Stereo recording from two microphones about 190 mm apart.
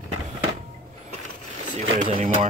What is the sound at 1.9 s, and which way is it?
Speech, 30° right (ahead or behind).